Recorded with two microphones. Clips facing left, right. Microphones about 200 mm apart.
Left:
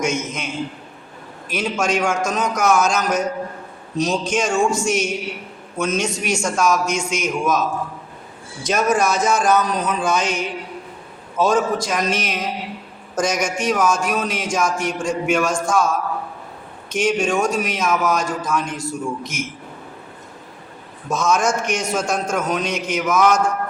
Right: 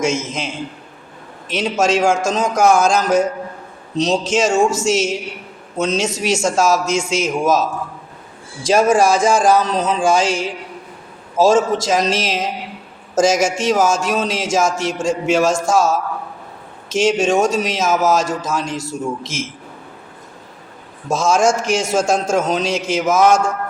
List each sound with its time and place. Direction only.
0.0 s a man's voice: 25° right (ahead or behind)
8.6 s a man's voice: 30° right (ahead or behind)
21.1 s a man's voice: 30° right (ahead or behind)